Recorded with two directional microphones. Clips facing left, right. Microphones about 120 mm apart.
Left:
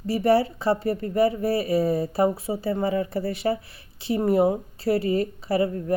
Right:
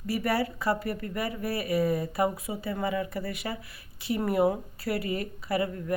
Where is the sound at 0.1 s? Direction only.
30° left (ahead or behind).